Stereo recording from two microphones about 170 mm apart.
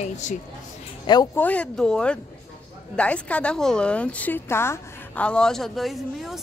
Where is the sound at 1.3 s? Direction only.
10° left (ahead or behind).